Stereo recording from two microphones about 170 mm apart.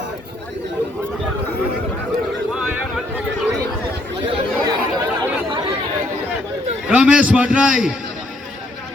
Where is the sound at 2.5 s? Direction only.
5° right (ahead or behind).